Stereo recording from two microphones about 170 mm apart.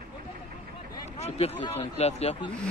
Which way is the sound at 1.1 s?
40° left (ahead or behind).